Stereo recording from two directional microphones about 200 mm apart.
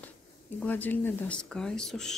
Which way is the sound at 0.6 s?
10° left (ahead or behind).